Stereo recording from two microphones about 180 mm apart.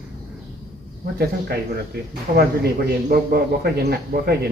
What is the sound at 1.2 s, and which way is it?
A man's voice, 60° right (ahead or behind).